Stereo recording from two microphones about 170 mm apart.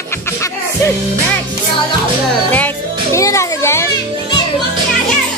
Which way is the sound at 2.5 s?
15° left (ahead or behind).